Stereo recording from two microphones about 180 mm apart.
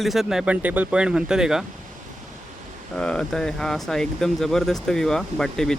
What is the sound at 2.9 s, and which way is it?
Speech, 5° left (ahead or behind).